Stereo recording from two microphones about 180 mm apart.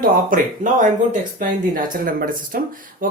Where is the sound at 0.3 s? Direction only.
45° right (ahead or behind).